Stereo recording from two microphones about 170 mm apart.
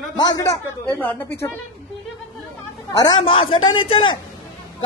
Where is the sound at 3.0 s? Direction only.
30° left (ahead or behind).